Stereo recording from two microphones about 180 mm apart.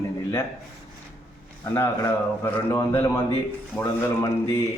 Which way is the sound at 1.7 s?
15° left (ahead or behind).